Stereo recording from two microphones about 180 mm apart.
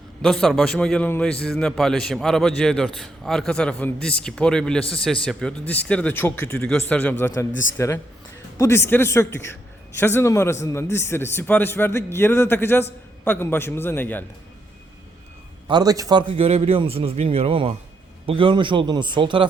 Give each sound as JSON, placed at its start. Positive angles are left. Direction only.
{"t": 0.2, "sound": "a man's voice", "side_deg": 0}
{"t": 7.5, "sound": "a man's voice", "side_deg": 90}
{"t": 8.5, "sound": "a man's voice", "side_deg": 15}
{"t": 15.6, "sound": "a man's voice", "side_deg": -25}